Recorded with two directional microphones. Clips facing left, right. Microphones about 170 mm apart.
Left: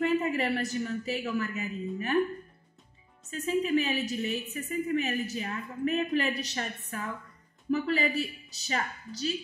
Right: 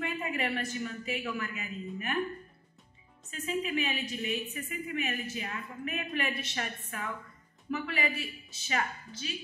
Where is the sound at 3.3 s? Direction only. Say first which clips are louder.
Left 6 dB; 35° left (ahead or behind).